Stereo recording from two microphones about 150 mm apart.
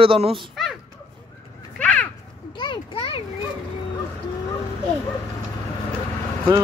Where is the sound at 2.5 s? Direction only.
35° left (ahead or behind).